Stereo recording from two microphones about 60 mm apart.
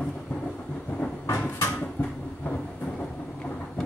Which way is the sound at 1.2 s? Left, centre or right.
Left.